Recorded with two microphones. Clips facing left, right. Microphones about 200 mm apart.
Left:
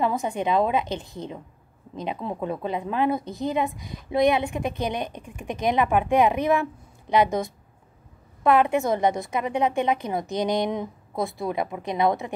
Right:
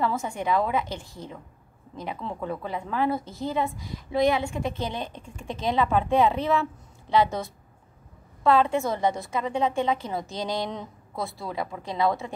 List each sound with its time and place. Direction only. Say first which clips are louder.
0.0 s a woman's voice: left 3 dB; 20° left (ahead or behind)